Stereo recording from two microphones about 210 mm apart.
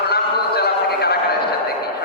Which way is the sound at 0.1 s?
50° left (ahead or behind).